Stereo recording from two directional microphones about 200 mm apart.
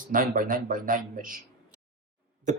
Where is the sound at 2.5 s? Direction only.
40° right (ahead or behind).